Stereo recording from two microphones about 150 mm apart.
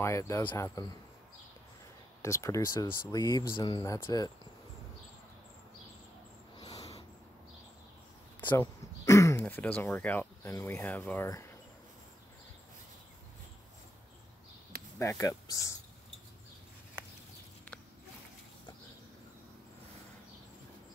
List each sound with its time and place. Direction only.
0.0 s speech: 20° left (ahead or behind)
2.2 s speech: 20° left (ahead or behind)
6.6 s a sound: 25° left (ahead or behind)
8.5 s speech: 20° left (ahead or behind)
15.0 s speech: 20° left (ahead or behind)